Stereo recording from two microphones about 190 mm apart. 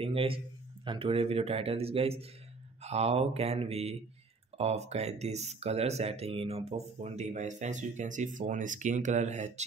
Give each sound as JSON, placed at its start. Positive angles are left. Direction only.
{"t": 0.0, "sound": "a man's voice", "side_deg": -30}